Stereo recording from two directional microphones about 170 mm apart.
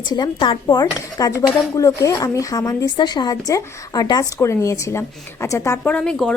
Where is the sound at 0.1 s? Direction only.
25° left (ahead or behind).